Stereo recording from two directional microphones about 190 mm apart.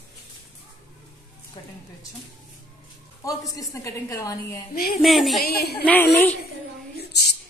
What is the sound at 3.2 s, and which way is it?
A woman's voice, 15° left (ahead or behind).